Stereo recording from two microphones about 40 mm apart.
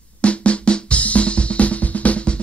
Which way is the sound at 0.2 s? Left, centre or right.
Left.